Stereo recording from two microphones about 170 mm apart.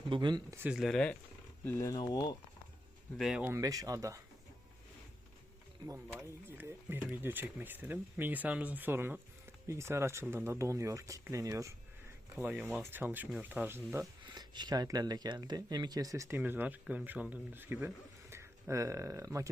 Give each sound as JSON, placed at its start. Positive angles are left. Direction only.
{"t": 0.1, "sound": "speech", "side_deg": -25}
{"t": 0.5, "sound": "speech", "side_deg": -5}
{"t": 1.6, "sound": "speech", "side_deg": 15}
{"t": 3.2, "sound": "speech", "side_deg": -5}
{"t": 6.1, "sound": "speech", "side_deg": -10}
{"t": 14.3, "sound": "speech", "side_deg": -25}